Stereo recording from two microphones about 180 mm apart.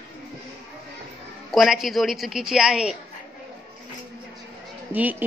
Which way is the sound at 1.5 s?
Centre (ahead or behind).